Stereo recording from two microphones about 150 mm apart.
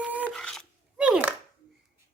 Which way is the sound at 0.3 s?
5° left (ahead or behind).